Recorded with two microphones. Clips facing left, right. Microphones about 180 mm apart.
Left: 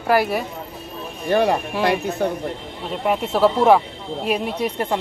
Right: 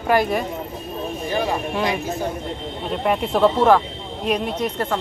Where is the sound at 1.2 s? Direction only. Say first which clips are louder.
Left 6 dB; 65° left (ahead or behind).